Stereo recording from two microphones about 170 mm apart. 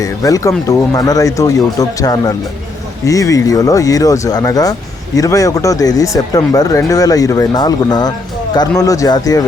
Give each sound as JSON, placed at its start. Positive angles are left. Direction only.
{"t": 0.0, "sound": "speech", "side_deg": 20}